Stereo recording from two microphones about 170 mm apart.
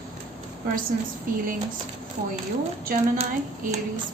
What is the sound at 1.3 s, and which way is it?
Speech, 55° right (ahead or behind).